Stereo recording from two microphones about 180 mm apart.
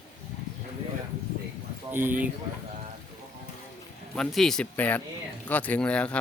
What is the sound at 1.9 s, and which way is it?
Speech, 10° right (ahead or behind).